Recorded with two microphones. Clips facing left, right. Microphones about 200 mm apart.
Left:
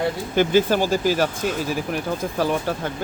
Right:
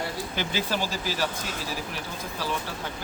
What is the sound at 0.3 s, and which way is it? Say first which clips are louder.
Speech: left 12 dB; 50° left (ahead or behind).